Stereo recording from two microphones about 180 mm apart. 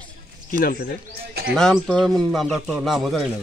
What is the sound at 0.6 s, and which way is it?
Speech, 55° left (ahead or behind).